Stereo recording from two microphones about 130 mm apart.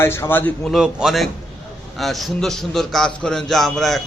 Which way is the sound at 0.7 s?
5° right (ahead or behind).